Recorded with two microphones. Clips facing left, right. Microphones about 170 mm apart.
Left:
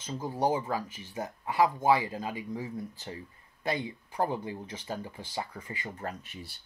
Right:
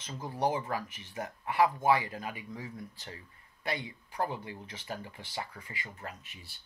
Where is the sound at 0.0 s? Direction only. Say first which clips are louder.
Left 2 dB; 20° left (ahead or behind).